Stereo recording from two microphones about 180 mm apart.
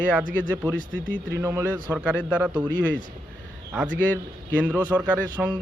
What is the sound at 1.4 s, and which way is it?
Speech, 15° right (ahead or behind).